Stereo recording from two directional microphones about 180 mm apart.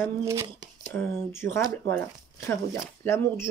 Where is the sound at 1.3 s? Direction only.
15° left (ahead or behind).